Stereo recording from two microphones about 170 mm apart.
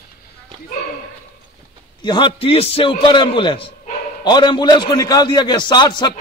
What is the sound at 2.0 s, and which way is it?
A man's voice, 25° left (ahead or behind).